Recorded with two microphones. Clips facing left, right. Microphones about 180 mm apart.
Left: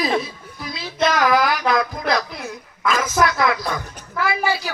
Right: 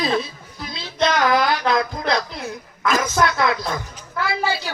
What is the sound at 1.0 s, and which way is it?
Child singing, 25° right (ahead or behind).